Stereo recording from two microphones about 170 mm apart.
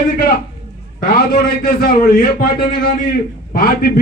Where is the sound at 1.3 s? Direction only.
60° left (ahead or behind).